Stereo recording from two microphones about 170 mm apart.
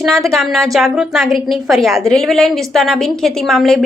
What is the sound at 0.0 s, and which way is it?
A woman's voice, centre (ahead or behind).